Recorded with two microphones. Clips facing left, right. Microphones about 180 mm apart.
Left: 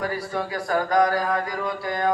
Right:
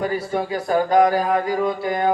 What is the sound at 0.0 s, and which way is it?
Mantra, 25° right (ahead or behind).